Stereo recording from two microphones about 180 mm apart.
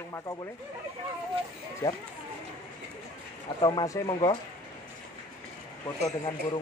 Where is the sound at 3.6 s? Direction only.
25° left (ahead or behind).